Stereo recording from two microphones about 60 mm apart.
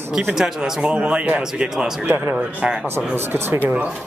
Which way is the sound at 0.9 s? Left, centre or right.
Right.